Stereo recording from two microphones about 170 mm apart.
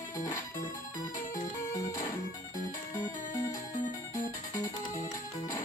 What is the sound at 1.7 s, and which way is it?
Music, 20° left (ahead or behind).